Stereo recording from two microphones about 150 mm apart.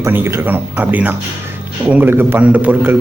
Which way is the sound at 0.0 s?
15° right (ahead or behind).